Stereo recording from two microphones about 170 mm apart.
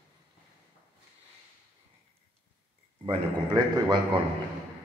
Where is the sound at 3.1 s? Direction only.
25° right (ahead or behind).